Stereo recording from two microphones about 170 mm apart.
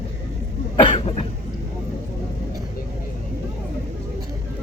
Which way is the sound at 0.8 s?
35° left (ahead or behind).